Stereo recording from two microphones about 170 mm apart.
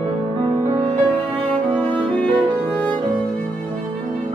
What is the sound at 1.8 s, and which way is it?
Music, 10° left (ahead or behind).